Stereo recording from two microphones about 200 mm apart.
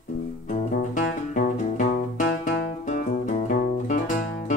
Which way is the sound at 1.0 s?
40° left (ahead or behind).